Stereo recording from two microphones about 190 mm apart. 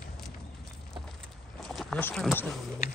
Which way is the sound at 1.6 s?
5° left (ahead or behind).